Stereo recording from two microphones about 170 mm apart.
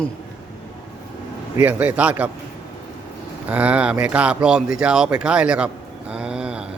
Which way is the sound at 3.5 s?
10° right (ahead or behind).